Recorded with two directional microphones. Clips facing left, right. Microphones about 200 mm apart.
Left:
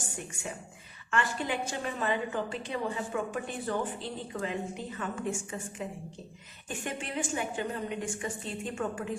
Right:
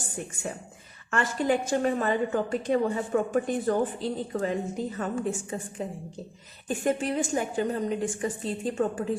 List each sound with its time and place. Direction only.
1.1 s a woman's voice: 45° right (ahead or behind)